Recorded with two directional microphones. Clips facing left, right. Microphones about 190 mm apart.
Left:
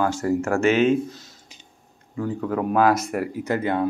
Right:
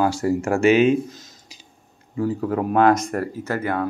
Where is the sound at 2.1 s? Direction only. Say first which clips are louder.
Right 3 dB; 5° right (ahead or behind); by 3.9 s 20° left (ahead or behind).